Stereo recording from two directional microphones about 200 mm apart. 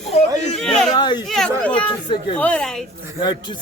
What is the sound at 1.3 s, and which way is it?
Chatter, 5° left (ahead or behind).